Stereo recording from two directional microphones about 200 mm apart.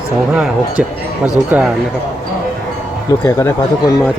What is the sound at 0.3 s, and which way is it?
Speech, 5° right (ahead or behind).